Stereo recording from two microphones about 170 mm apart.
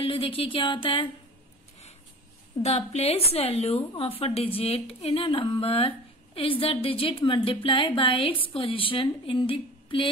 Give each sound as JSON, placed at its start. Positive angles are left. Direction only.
{"t": 0.0, "sound": "speech", "side_deg": 35}
{"t": 2.6, "sound": "speech", "side_deg": 40}